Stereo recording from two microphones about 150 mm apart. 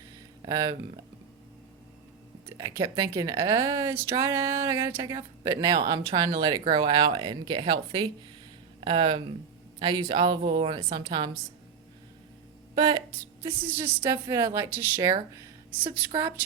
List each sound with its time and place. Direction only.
0.4 s speech: 25° right (ahead or behind)
2.6 s speech: 25° right (ahead or behind)
12.7 s a woman's voice: 30° right (ahead or behind)
13.6 s a woman's voice: 15° right (ahead or behind)